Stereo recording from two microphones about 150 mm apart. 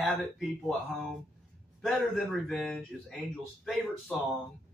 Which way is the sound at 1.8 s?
Centre (ahead or behind).